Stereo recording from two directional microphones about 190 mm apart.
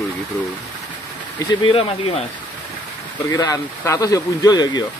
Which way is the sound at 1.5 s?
25° left (ahead or behind).